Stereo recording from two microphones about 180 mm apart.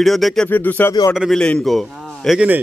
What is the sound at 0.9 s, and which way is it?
Speech, 20° left (ahead or behind).